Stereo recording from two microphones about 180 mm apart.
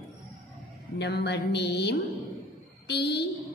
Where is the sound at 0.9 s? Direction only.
65° left (ahead or behind).